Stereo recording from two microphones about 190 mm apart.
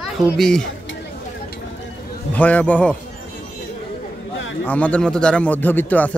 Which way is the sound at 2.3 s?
10° left (ahead or behind).